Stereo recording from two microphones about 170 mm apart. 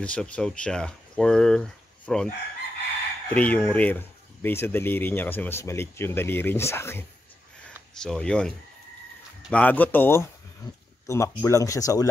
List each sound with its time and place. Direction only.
0.0 s speech: 5° left (ahead or behind)
3.3 s speech: 10° left (ahead or behind)